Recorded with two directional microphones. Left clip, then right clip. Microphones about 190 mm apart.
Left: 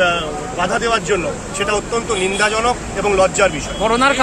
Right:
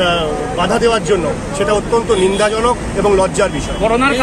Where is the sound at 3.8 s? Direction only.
65° left (ahead or behind).